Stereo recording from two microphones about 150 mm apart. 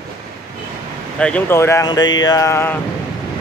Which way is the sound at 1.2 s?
10° left (ahead or behind).